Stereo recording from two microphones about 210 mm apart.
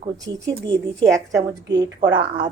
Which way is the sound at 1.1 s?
15° right (ahead or behind).